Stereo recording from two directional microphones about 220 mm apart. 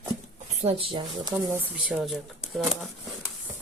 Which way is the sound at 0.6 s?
25° right (ahead or behind).